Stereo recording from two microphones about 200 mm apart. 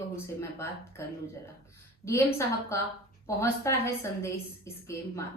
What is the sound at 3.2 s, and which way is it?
A woman's voice, 15° left (ahead or behind).